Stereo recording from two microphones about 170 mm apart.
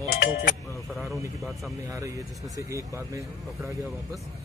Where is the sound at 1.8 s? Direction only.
20° right (ahead or behind).